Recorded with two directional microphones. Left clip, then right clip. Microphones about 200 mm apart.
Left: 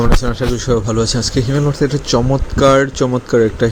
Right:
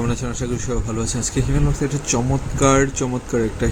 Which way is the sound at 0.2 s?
20° left (ahead or behind).